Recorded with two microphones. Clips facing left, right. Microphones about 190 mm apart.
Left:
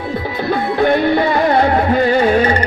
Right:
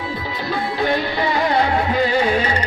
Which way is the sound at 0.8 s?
55° left (ahead or behind).